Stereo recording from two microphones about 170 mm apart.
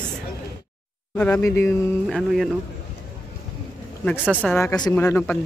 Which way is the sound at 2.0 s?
Centre (ahead or behind).